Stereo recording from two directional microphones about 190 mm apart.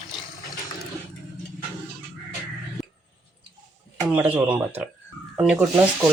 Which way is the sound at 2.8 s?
Centre (ahead or behind).